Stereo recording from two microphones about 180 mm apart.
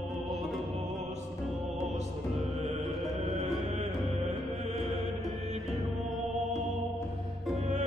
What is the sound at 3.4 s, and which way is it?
Music, 40° right (ahead or behind).